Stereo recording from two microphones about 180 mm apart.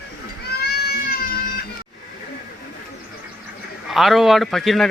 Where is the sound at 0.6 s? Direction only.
60° left (ahead or behind).